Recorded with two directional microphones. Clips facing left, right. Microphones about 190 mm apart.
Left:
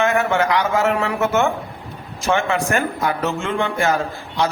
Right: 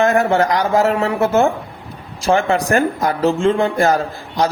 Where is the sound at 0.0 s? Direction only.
35° right (ahead or behind).